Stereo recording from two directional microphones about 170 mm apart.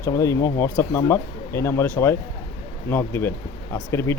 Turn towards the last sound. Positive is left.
turn(degrees=15)  # may be behind; listen again after turning